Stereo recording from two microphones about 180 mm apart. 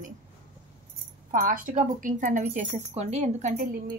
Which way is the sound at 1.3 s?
50° right (ahead or behind).